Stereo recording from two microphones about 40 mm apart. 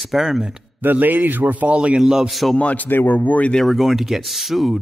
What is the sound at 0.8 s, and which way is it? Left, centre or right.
Speech, right.